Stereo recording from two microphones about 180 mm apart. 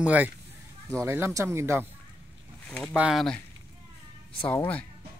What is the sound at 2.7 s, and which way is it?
Speech, 5° left (ahead or behind).